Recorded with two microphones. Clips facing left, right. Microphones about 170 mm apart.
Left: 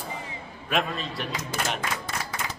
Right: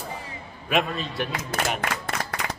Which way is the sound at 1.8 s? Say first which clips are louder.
Right 3 dB; 65° right (ahead or behind).